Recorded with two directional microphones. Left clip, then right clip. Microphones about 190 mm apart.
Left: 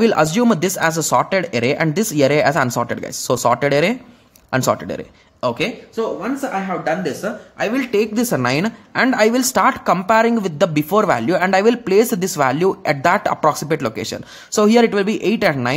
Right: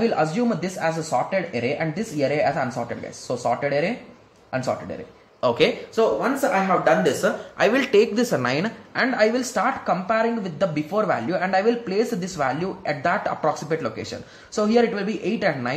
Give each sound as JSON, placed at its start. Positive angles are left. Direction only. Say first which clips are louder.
{"t": 0.0, "sound": "a woman's voice", "louder": "left 7 dB", "side_deg": 50}
{"t": 5.6, "sound": "speech", "louder": "right 2 dB", "side_deg": 15}
{"t": 8.1, "sound": "a woman's voice", "louder": "left 4 dB", "side_deg": 35}